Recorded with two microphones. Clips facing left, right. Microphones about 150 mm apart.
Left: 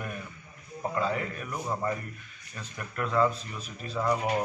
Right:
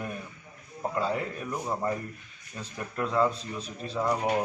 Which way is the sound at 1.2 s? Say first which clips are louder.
Right 2 dB; 25° right (ahead or behind).